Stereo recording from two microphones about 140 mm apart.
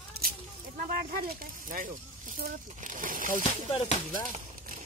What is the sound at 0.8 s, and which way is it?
Speech, 75° right (ahead or behind).